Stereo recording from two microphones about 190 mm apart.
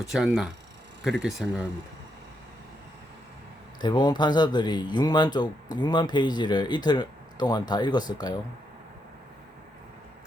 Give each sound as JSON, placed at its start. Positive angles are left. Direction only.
{"t": 0.1, "sound": "speech", "side_deg": 0}
{"t": 3.8, "sound": "speech", "side_deg": 25}